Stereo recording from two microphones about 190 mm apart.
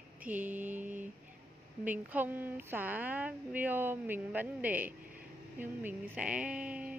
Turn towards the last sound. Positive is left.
turn(degrees=-5)  # may be behind; listen again after turning